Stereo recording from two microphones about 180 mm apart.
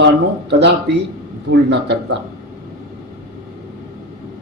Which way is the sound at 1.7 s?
75° right (ahead or behind).